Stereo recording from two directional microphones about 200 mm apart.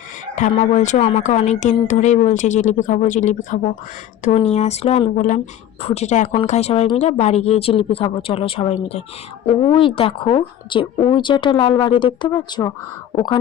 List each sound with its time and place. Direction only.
0.3 s speech: 35° left (ahead or behind)